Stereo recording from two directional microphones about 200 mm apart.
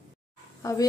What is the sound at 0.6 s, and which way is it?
Speech, 15° left (ahead or behind).